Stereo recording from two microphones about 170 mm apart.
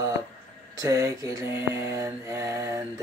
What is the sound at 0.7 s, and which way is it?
Mantra, 20° right (ahead or behind).